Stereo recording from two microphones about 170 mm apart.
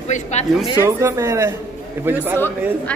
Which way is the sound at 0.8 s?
15° right (ahead or behind).